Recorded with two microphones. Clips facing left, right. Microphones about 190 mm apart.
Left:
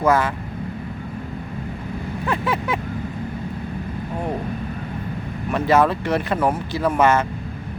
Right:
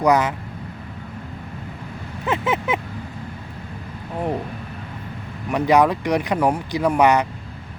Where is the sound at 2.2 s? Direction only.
20° right (ahead or behind).